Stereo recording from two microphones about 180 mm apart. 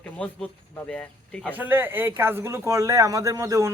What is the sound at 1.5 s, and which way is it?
Speech, 10° right (ahead or behind).